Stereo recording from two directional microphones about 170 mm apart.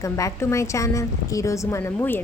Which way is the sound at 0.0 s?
20° left (ahead or behind).